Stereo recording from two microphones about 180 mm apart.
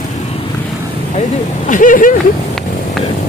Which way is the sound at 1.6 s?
45° left (ahead or behind).